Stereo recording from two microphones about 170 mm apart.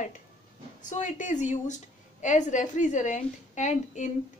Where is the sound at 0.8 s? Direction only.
50° left (ahead or behind).